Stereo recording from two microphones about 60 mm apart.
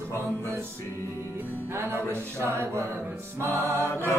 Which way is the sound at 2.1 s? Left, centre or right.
Right.